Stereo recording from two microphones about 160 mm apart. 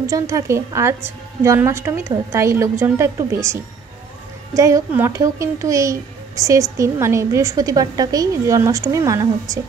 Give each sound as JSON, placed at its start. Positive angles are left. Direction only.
{"t": 0.1, "sound": "a woman's voice", "side_deg": -20}